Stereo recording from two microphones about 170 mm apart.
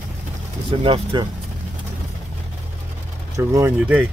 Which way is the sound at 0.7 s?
30° right (ahead or behind).